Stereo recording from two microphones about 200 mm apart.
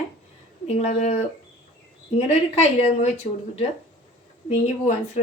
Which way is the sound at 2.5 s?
30° left (ahead or behind).